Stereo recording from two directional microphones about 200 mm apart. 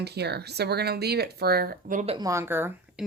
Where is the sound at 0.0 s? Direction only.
55° right (ahead or behind); by 2.1 s 40° right (ahead or behind).